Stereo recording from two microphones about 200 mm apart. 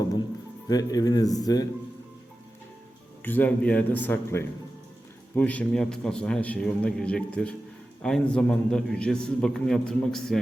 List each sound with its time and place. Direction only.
0.7 s speech: 20° left (ahead or behind)
3.2 s a man's voice: 10° left (ahead or behind)